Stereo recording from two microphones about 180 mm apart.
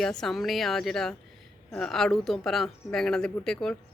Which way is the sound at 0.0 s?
Centre (ahead or behind).